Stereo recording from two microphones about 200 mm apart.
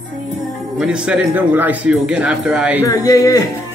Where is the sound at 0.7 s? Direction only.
5° right (ahead or behind).